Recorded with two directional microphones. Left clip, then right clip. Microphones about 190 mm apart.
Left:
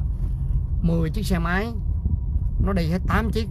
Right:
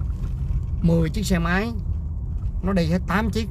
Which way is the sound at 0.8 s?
15° right (ahead or behind).